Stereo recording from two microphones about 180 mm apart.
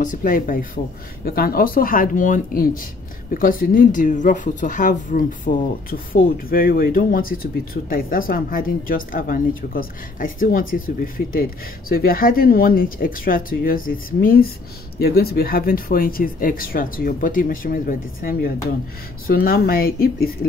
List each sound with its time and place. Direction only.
0.0 s speech: 45° left (ahead or behind)